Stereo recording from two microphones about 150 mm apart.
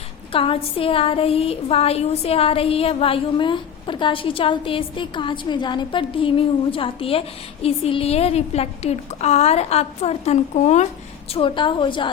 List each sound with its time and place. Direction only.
0.3 s a woman's voice: 40° left (ahead or behind)
11.3 s a woman's voice: 35° left (ahead or behind)